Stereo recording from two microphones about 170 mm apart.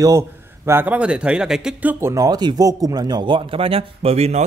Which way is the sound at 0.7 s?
10° right (ahead or behind).